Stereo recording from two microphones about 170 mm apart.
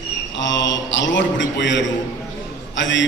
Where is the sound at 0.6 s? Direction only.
90° left.